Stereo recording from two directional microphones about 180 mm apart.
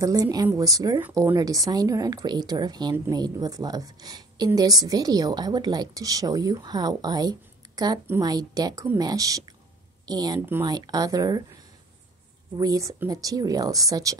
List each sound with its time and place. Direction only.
0.0 s speech: 20° right (ahead or behind)